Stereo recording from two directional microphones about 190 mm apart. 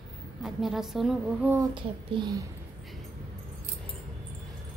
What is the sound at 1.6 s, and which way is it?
Speech, 25° right (ahead or behind).